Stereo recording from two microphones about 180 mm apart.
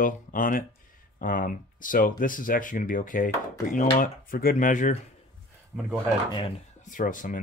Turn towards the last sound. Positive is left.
turn(degrees=50)  # may be behind; listen again after turning